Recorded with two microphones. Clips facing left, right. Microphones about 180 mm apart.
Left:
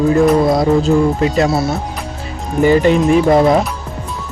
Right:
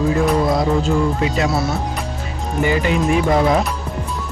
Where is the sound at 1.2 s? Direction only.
40° left (ahead or behind).